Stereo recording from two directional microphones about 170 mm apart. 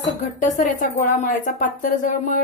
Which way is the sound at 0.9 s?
50° left (ahead or behind).